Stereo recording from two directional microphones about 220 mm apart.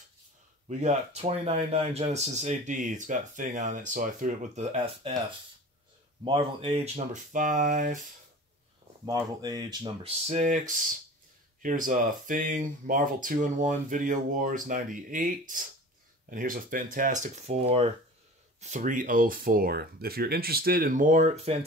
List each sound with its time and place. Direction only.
0.7 s speech: 30° right (ahead or behind)
6.2 s speech: 25° right (ahead or behind)
9.0 s speech: 15° right (ahead or behind)
10.2 s speech: 35° right (ahead or behind)
11.6 s speech: 35° right (ahead or behind)